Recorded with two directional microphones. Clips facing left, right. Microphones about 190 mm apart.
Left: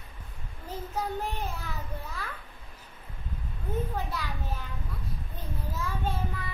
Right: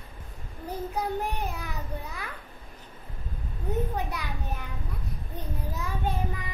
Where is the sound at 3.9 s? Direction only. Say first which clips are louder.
Right 1 dB; 20° right (ahead or behind).